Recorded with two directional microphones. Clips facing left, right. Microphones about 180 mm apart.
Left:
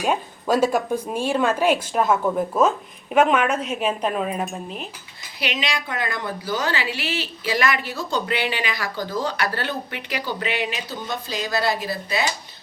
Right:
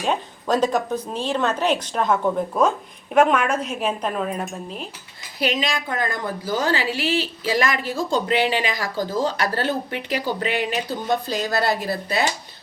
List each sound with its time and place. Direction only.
0.0 s a woman's voice: 10° left (ahead or behind)
5.4 s a woman's voice: 40° right (ahead or behind)